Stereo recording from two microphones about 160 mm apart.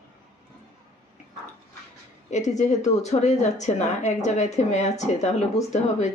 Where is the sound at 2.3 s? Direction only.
45° left (ahead or behind).